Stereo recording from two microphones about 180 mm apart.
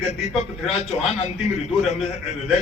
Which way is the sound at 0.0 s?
35° left (ahead or behind).